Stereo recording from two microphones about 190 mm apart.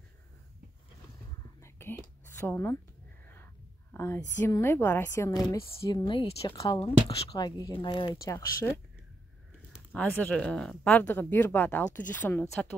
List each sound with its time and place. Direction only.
1.6 s whispering: 10° left (ahead or behind)
3.9 s whispering: 10° left (ahead or behind)
4.4 s speech: 10° left (ahead or behind)